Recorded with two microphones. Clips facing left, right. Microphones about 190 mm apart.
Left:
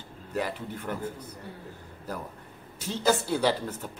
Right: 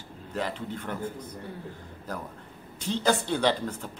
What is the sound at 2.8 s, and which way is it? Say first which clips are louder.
Speech: even; 5° left (ahead or behind).